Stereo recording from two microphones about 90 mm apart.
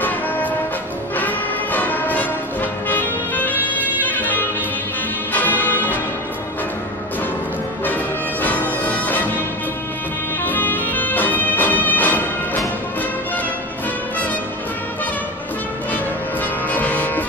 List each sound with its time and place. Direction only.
1.1 s music: 20° left (ahead or behind)
7.8 s music: 20° left (ahead or behind)
10.4 s music: 20° left (ahead or behind)
16.7 s music: 20° left (ahead or behind)